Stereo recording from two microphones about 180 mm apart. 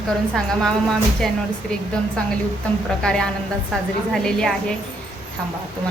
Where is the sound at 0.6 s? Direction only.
Centre (ahead or behind).